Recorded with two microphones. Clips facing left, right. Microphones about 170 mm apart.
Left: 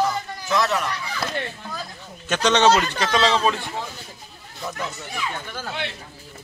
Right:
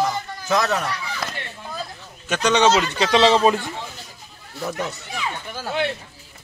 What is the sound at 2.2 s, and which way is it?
Speech, 10° right (ahead or behind).